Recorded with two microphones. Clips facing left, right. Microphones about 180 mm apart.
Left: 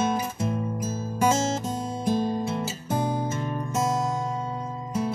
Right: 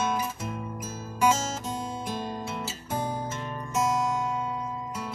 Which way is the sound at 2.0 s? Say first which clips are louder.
Left 8 dB; 40° left (ahead or behind).